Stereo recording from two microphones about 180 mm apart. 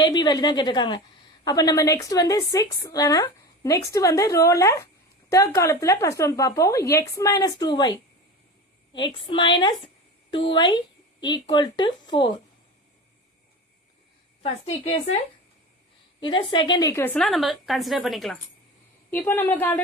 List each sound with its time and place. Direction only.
0.0 s a woman's voice: 25° left (ahead or behind)
14.4 s a woman's voice: 35° left (ahead or behind)
16.2 s a woman's voice: 25° left (ahead or behind)
17.2 s a woman's voice: centre (ahead or behind)
19.1 s a woman's voice: 10° left (ahead or behind)